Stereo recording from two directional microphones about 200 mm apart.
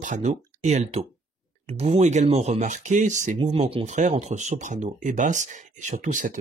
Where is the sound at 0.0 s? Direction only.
35° right (ahead or behind).